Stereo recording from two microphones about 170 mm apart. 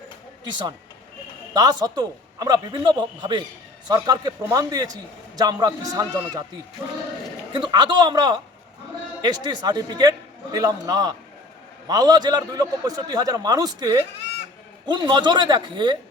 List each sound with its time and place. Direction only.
1.5 s a man's voice: 25° right (ahead or behind)
7.5 s a man's voice: 25° right (ahead or behind)